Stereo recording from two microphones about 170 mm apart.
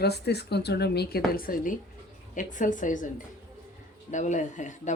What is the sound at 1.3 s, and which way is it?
A woman's voice, 60° left (ahead or behind).